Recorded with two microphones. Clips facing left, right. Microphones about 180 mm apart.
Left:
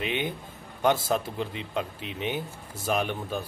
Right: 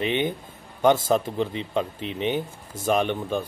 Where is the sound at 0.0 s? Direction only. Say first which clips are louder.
Right 5 dB; centre (ahead or behind).